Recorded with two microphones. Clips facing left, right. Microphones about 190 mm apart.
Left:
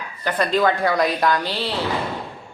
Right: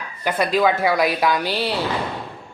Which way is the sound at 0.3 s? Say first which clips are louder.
Right 1 dB; 10° right (ahead or behind).